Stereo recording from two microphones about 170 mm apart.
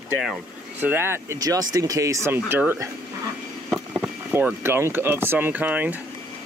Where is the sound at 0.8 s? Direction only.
15° right (ahead or behind).